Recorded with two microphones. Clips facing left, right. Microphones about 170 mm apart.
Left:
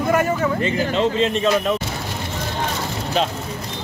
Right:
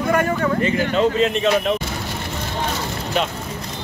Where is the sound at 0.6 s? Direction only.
30° left (ahead or behind).